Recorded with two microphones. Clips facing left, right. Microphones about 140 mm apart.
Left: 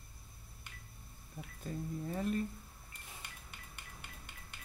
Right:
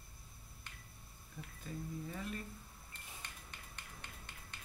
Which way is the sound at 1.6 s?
40° left (ahead or behind).